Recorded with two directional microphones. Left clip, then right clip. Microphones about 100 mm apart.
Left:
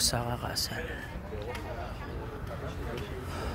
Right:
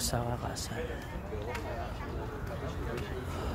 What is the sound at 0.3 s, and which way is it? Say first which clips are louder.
Speech: left 4 dB; 30° left (ahead or behind).